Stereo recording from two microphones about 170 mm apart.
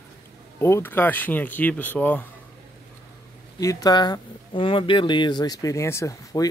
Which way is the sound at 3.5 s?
20° left (ahead or behind).